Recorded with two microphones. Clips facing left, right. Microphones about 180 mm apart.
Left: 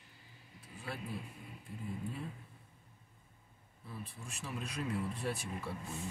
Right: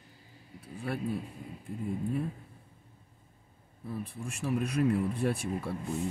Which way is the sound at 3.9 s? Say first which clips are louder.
Right 9 dB; 60° right (ahead or behind).